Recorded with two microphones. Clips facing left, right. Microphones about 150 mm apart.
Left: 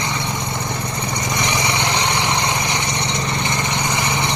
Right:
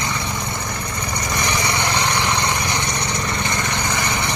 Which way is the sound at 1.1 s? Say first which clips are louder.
Even; 20° left (ahead or behind).